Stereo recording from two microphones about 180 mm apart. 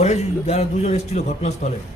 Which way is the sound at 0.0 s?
40° left (ahead or behind).